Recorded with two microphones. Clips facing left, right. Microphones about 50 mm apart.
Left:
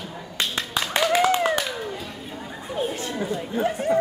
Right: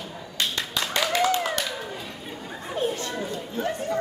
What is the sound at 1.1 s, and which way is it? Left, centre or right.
Clapping, centre.